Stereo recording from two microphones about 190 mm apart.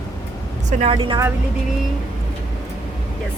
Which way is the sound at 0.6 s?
40° right (ahead or behind).